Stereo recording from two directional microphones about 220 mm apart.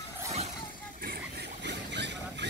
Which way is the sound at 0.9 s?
45° right (ahead or behind).